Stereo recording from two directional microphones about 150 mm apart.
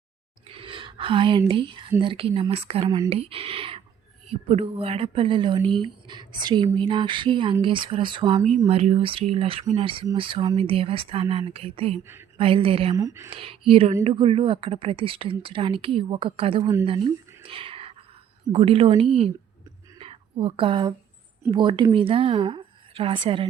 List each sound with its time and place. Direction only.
0.4 s a sound: 40° right (ahead or behind)
2.0 s speech: 35° right (ahead or behind)
8.4 s speech: 45° right (ahead or behind)
13.0 s speech: 20° right (ahead or behind)
13.3 s speech: 35° right (ahead or behind)
16.8 s a sound: 35° right (ahead or behind)
18.5 s speech: 40° right (ahead or behind)
20.0 s whispering: 40° right (ahead or behind)
21.5 s a woman's voice: 30° right (ahead or behind)